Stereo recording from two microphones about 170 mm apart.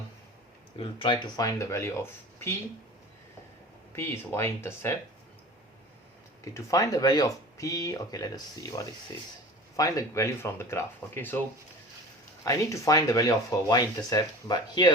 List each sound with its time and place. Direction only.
0.8 s speech: 30° left (ahead or behind)
3.9 s speech: 15° left (ahead or behind)
6.4 s speech: 20° left (ahead or behind)
9.7 s speech: 20° left (ahead or behind)
12.5 s speech: 20° left (ahead or behind)